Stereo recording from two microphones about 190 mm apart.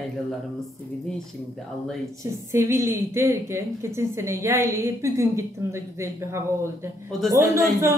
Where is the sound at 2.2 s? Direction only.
15° right (ahead or behind).